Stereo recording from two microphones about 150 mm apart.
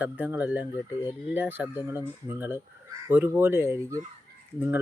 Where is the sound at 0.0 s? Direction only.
10° right (ahead or behind).